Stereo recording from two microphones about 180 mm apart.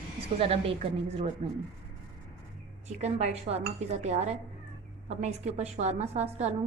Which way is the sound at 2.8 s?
40° right (ahead or behind).